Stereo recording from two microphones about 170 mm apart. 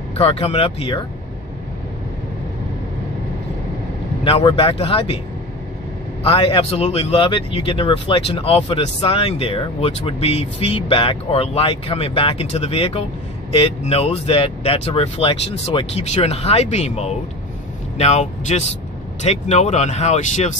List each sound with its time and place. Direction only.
0.2 s speech: 35° left (ahead or behind)
4.2 s speech: 35° left (ahead or behind)
6.2 s speech: 35° left (ahead or behind)